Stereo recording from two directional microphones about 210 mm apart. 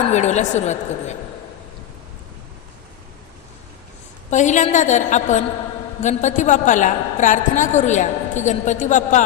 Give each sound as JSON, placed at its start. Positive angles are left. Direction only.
{"t": 0.1, "sound": "a woman's voice", "side_deg": 35}
{"t": 4.3, "sound": "a woman's voice", "side_deg": 35}